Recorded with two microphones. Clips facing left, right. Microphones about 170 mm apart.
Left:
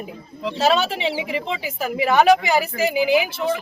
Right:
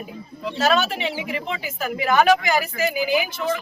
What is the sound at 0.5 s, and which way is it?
Speech, 25° left (ahead or behind).